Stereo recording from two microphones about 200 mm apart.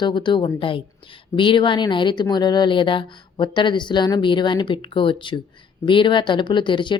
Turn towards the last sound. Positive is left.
turn(degrees=25)  # may be behind; listen again after turning